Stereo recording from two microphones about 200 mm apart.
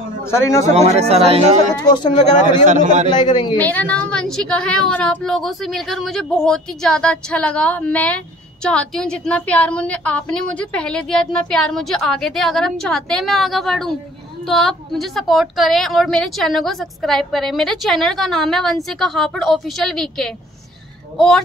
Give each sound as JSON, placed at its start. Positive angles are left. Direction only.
{"t": 0.2, "sound": "a man's voice", "side_deg": 15}
{"t": 0.7, "sound": "speech", "side_deg": -30}
{"t": 1.8, "sound": "a man's voice", "side_deg": 20}
{"t": 2.6, "sound": "speech", "side_deg": -40}
{"t": 3.1, "sound": "a man's voice", "side_deg": 20}
{"t": 3.5, "sound": "a woman's voice", "side_deg": 10}